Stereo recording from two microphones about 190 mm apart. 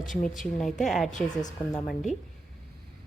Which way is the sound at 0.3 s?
Centre (ahead or behind).